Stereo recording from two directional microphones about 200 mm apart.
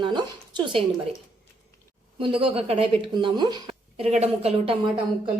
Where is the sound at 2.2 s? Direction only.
25° right (ahead or behind).